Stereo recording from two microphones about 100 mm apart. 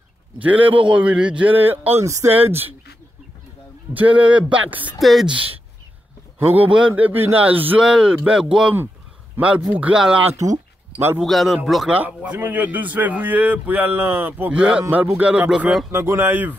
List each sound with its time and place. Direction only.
0.4 s a man's voice: 15° right (ahead or behind)
2.0 s speech: 30° right (ahead or behind)
2.3 s speech: 20° right (ahead or behind)
3.9 s a man's voice: 15° right (ahead or behind)
5.0 s speech: centre (ahead or behind)
6.5 s a man's voice: 15° right (ahead or behind)
9.4 s a man's voice: 20° right (ahead or behind)
10.3 s speech: 35° right (ahead or behind)
11.2 s speech: centre (ahead or behind)
11.9 s a man's voice: 15° right (ahead or behind)
15.9 s speech: 25° right (ahead or behind)